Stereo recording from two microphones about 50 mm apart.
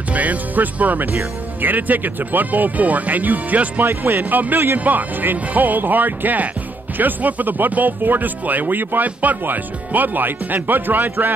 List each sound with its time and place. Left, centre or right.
0.1 s speech: right